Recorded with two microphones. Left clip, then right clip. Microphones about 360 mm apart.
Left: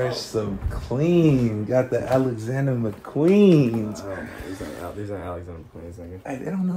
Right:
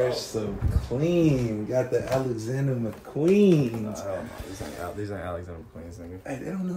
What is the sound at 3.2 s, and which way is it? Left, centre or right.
Speech, centre.